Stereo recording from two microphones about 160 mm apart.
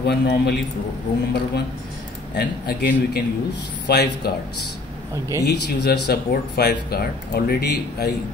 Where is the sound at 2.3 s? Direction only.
90° left.